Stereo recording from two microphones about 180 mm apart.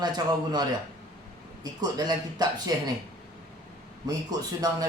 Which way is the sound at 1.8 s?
20° right (ahead or behind).